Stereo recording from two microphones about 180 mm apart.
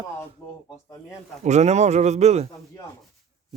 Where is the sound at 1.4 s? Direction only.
40° right (ahead or behind).